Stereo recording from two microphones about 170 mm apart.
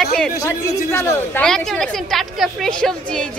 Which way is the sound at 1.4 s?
5° left (ahead or behind).